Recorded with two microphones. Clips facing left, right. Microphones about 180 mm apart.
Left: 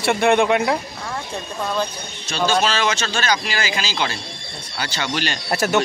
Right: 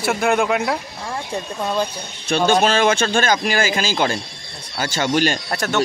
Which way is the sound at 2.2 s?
55° right (ahead or behind).